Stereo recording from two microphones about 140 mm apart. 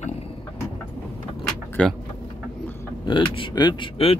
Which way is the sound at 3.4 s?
35° left (ahead or behind).